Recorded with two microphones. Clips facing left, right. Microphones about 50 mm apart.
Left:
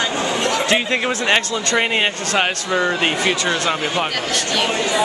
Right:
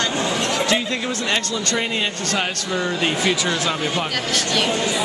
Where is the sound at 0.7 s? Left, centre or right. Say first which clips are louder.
Left 4 dB; left.